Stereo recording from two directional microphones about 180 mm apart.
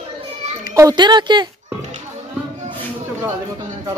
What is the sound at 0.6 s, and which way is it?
Speech, 20° right (ahead or behind).